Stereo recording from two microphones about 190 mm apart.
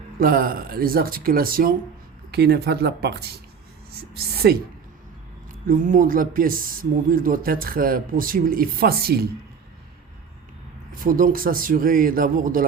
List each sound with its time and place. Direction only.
0.2 s speech: 50° right (ahead or behind)
4.4 s speech: 60° right (ahead or behind)
5.6 s speech: 45° right (ahead or behind)
11.0 s speech: 45° right (ahead or behind)